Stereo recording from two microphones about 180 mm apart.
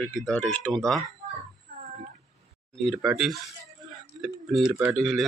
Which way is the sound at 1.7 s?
60° right (ahead or behind).